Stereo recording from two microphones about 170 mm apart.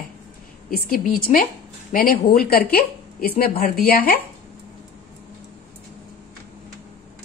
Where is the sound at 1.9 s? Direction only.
55° left (ahead or behind).